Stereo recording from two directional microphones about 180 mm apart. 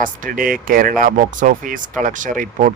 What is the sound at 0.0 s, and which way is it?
Speech, 50° right (ahead or behind).